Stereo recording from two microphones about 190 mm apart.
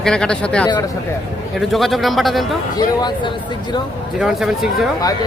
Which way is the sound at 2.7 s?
20° left (ahead or behind).